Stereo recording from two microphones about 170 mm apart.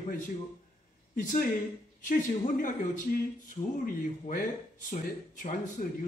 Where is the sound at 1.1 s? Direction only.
50° left (ahead or behind).